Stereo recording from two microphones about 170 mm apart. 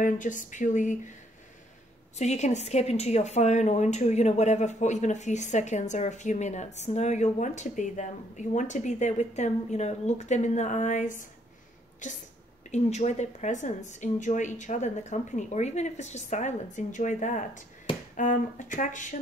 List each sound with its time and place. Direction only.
0.0 s a woman's voice: 50° left (ahead or behind)
2.1 s a woman's voice: 40° left (ahead or behind)